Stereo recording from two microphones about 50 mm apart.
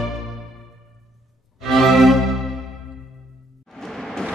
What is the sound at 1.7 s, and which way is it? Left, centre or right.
Music, centre.